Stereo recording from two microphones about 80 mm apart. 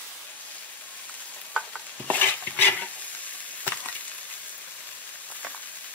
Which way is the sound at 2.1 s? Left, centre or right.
Left.